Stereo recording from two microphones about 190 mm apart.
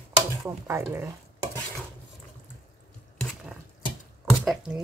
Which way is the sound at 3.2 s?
Centre (ahead or behind).